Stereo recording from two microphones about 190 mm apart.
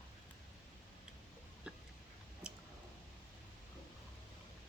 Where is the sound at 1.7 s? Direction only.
5° right (ahead or behind).